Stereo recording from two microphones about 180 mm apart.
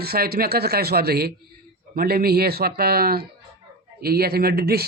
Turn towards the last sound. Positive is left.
turn(degrees=-60)  # may be behind; listen again after turning